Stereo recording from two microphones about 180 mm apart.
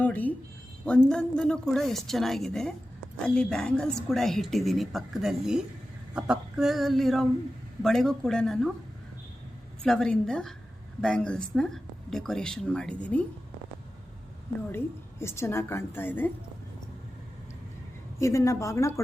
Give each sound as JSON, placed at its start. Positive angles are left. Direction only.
{"t": 0.0, "sound": "a woman's voice", "side_deg": 10}
{"t": 9.8, "sound": "a woman's voice", "side_deg": 5}
{"t": 14.7, "sound": "a woman's voice", "side_deg": 15}
{"t": 18.2, "sound": "a woman's voice", "side_deg": 15}